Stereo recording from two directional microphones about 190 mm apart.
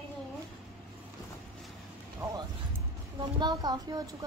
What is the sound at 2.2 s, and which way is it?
A child's voice, 15° right (ahead or behind).